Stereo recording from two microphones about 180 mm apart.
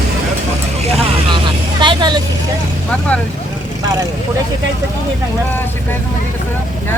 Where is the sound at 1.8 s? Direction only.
25° right (ahead or behind).